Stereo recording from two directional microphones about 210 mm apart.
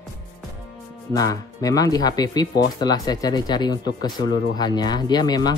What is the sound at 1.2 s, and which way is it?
Speech, 15° left (ahead or behind).